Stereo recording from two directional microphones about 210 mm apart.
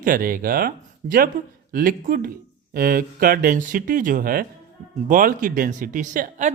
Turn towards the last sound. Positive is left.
turn(degrees=-40)  # may be behind; listen again after turning